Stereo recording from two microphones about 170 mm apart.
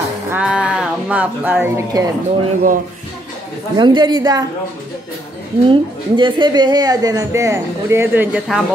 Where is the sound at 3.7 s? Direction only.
25° right (ahead or behind).